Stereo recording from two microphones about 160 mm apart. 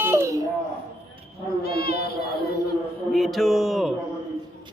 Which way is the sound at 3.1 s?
Centre (ahead or behind).